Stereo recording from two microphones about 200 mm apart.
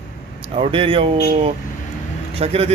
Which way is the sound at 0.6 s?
25° right (ahead or behind).